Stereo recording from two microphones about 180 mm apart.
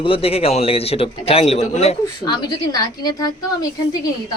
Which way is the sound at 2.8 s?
20° left (ahead or behind).